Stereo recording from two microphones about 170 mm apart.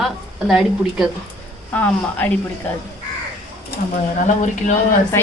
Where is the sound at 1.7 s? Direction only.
10° left (ahead or behind).